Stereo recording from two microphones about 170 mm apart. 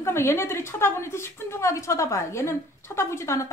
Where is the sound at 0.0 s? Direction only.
15° left (ahead or behind).